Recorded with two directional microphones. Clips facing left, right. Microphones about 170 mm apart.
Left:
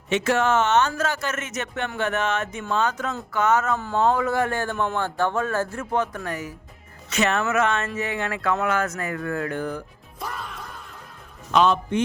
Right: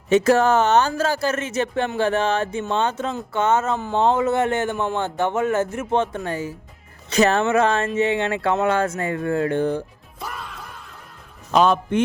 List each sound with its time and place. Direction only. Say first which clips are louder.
0.1 s speech: right 5 dB; 35° right (ahead or behind)
10.2 s music: even; centre (ahead or behind)
11.5 s a man's voice: right 2 dB; 50° right (ahead or behind)